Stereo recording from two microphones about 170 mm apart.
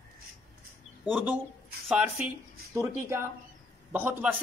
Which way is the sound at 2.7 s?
15° right (ahead or behind).